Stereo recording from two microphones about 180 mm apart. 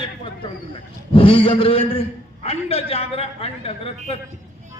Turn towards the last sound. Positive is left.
turn(degrees=35)  # may be behind; listen again after turning